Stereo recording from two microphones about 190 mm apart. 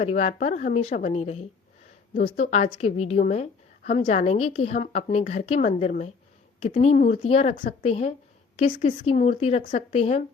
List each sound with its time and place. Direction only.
0.0 s a woman's voice: 35° left (ahead or behind)